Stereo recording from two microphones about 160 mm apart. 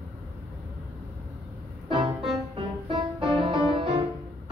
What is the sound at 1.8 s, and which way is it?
Music, 30° right (ahead or behind).